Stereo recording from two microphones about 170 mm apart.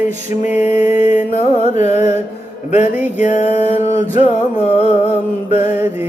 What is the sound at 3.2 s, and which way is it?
Music, 40° left (ahead or behind).